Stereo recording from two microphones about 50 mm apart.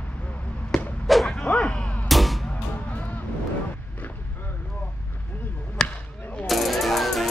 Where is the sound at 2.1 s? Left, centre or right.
Centre.